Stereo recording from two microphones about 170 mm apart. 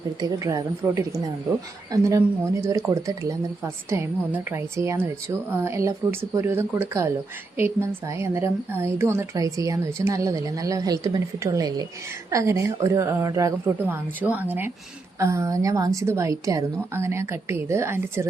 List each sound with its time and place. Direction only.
0.2 s a woman's voice: 20° right (ahead or behind)